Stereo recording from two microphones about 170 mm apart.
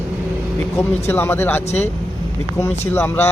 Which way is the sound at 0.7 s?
15° left (ahead or behind).